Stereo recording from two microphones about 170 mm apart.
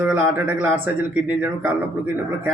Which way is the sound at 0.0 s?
10° right (ahead or behind).